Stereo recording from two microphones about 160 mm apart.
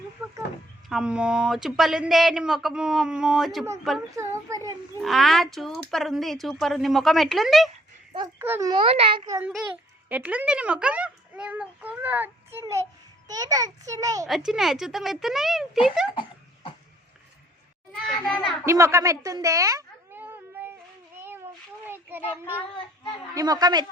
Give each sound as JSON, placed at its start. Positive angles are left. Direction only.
{"t": 0.2, "sound": "speech", "side_deg": -10}
{"t": 4.1, "sound": "a child's voice", "side_deg": -20}
{"t": 4.9, "sound": "speech", "side_deg": 0}
{"t": 8.4, "sound": "a child's voice", "side_deg": -15}
{"t": 8.7, "sound": "a child's voice", "side_deg": -35}
{"t": 10.1, "sound": "a child's voice", "side_deg": -10}
{"t": 14.3, "sound": "speech", "side_deg": 0}
{"t": 18.0, "sound": "speech", "side_deg": 5}
{"t": 18.6, "sound": "a sound", "side_deg": -15}
{"t": 21.8, "sound": "a child's voice", "side_deg": -15}
{"t": 23.3, "sound": "a child's voice", "side_deg": -25}